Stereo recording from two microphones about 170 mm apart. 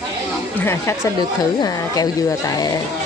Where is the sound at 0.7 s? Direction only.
15° left (ahead or behind).